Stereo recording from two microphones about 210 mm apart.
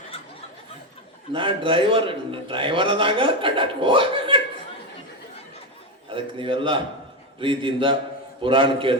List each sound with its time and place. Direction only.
1.3 s a man's voice: 25° right (ahead or behind)
6.1 s a man's voice: 25° right (ahead or behind)